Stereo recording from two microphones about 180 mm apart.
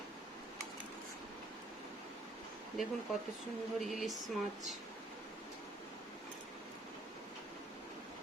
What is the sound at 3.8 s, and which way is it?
Speech, centre (ahead or behind).